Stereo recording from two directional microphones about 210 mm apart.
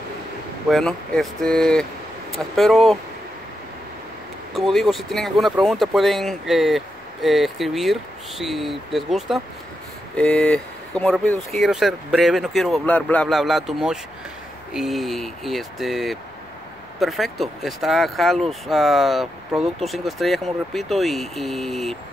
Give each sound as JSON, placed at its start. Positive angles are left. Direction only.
{"t": 0.7, "sound": "speech", "side_deg": 0}
{"t": 4.6, "sound": "speech", "side_deg": 0}